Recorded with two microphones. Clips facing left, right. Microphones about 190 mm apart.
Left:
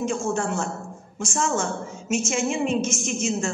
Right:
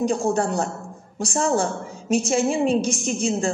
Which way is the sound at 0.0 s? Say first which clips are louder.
Right 4 dB; 35° right (ahead or behind).